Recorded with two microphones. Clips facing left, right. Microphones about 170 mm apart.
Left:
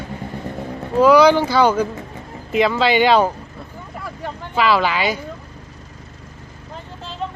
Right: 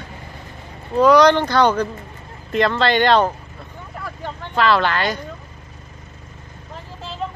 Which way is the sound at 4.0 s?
5° left (ahead or behind).